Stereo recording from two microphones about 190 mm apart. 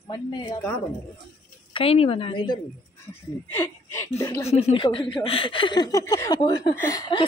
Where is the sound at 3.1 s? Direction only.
10° left (ahead or behind).